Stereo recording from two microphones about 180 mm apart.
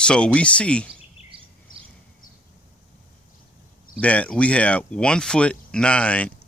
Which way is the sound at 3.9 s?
5° left (ahead or behind).